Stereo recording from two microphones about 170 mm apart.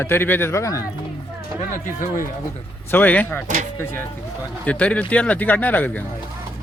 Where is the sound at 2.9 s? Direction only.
10° left (ahead or behind).